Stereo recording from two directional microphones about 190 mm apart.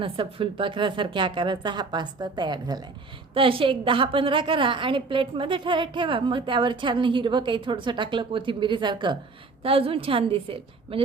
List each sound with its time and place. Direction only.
0.0 s a woman's voice: 30° right (ahead or behind)